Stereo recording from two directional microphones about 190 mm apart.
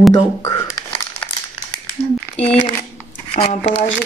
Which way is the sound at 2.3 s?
30° left (ahead or behind).